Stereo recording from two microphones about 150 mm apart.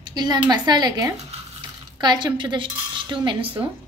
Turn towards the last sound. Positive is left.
turn(degrees=-35)  # may be behind; listen again after turning